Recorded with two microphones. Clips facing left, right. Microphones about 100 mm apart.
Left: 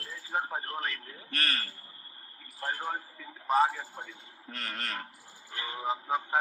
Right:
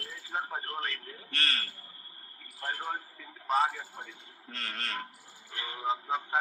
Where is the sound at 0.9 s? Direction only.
35° right (ahead or behind).